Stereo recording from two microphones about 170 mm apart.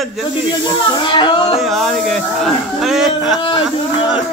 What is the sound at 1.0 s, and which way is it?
Speech, 30° left (ahead or behind).